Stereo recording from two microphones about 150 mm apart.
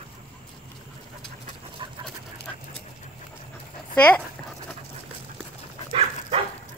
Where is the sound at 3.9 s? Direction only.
10° left (ahead or behind).